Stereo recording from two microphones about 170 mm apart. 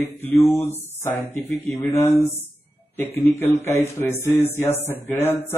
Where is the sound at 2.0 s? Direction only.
15° left (ahead or behind).